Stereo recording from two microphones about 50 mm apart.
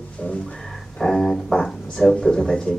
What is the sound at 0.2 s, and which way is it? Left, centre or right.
Music, centre.